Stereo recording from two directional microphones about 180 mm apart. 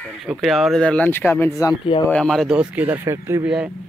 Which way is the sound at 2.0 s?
5° left (ahead or behind).